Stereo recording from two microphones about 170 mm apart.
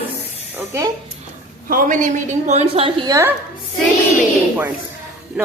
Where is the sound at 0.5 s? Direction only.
15° right (ahead or behind).